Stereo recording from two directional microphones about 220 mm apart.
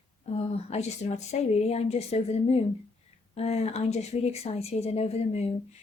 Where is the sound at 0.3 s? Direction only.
30° left (ahead or behind).